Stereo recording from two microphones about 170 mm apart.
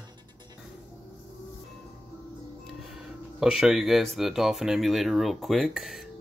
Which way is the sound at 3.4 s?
5° right (ahead or behind).